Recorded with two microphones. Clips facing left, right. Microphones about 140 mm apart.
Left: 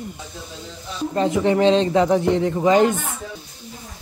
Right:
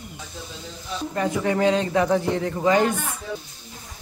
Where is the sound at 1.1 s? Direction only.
25° left (ahead or behind).